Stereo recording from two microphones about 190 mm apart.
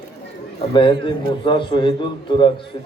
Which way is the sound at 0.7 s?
25° left (ahead or behind).